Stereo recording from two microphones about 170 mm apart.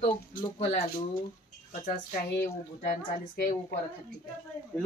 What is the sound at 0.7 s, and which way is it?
A woman's voice, 50° left (ahead or behind).